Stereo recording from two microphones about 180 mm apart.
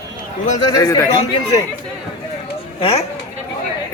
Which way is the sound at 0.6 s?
20° left (ahead or behind).